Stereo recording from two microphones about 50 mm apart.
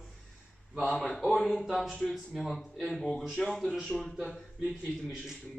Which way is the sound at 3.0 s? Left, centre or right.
Centre.